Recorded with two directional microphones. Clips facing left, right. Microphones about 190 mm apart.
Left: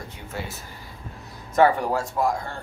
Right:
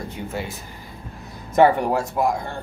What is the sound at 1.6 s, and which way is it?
Speech, 20° right (ahead or behind).